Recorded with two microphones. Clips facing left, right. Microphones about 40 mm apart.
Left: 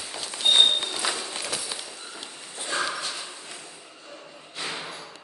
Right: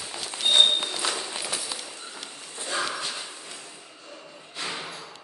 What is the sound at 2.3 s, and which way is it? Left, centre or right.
Sniff, left.